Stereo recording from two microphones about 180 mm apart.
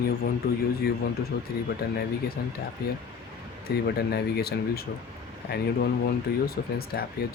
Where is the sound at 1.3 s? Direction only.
65° left (ahead or behind).